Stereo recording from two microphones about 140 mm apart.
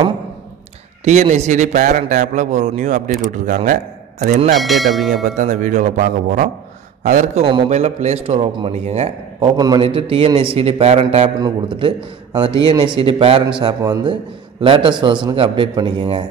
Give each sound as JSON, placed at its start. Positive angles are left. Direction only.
{"t": 1.0, "sound": "a man's voice", "side_deg": -55}
{"t": 4.6, "sound": "speech", "side_deg": 0}
{"t": 5.1, "sound": "a man's voice", "side_deg": -60}
{"t": 7.0, "sound": "a man's voice", "side_deg": -55}
{"t": 9.6, "sound": "a man's voice", "side_deg": -30}
{"t": 9.8, "sound": "a man's voice", "side_deg": -40}
{"t": 11.4, "sound": "a man's voice", "side_deg": -35}